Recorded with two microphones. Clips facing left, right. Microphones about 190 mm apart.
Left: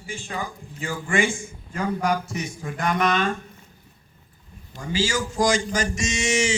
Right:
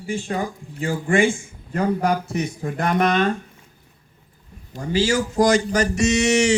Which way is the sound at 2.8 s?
50° right (ahead or behind).